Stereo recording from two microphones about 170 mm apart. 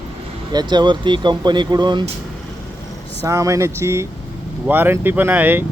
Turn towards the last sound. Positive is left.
turn(degrees=-10)  # may be behind; listen again after turning